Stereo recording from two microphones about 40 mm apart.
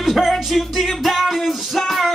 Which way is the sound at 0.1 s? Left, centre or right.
Centre.